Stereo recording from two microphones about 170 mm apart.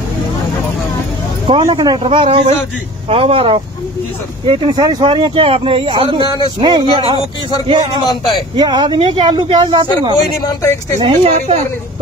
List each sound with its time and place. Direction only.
1.6 s speech: 25° right (ahead or behind)
8.0 s speech: 25° left (ahead or behind)
8.5 s speech: 25° right (ahead or behind)